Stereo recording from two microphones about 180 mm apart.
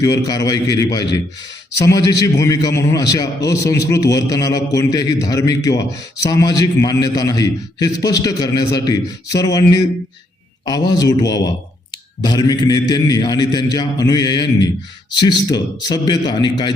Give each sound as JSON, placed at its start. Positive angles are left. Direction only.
{"t": 0.0, "sound": "a man's voice", "side_deg": 20}